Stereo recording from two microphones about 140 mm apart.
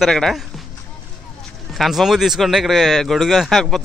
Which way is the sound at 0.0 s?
Centre (ahead or behind).